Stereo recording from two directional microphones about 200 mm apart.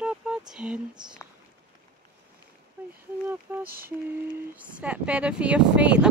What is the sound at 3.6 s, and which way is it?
Speech, 45° right (ahead or behind).